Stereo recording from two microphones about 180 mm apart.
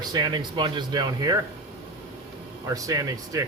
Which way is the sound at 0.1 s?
25° right (ahead or behind).